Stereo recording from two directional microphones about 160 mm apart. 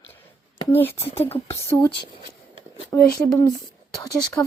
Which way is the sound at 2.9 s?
20° left (ahead or behind).